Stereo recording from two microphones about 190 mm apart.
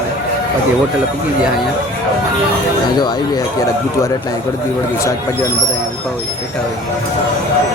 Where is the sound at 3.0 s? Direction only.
20° left (ahead or behind).